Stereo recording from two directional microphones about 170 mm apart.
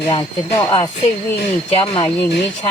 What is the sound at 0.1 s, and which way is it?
Speech, 30° left (ahead or behind).